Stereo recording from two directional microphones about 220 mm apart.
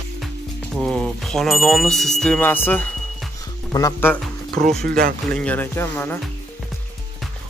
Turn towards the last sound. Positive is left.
turn(degrees=10)  # may be behind; listen again after turning